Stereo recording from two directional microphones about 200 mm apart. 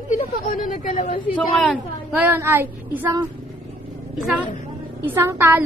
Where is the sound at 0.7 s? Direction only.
40° left (ahead or behind).